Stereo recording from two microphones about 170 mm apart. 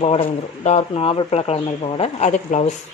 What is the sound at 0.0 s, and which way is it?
Speech, 35° left (ahead or behind).